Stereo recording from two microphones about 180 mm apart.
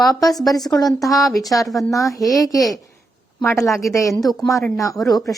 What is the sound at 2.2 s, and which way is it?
Speech, 20° left (ahead or behind).